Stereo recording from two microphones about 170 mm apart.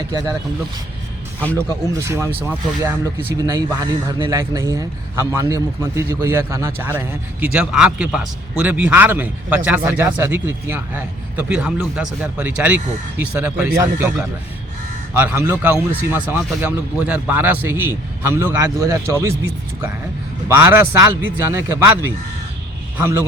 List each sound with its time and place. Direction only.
0.1 s speech: 25° right (ahead or behind)
1.5 s a man's voice: 15° right (ahead or behind)
20.5 s a man's voice: 10° right (ahead or behind)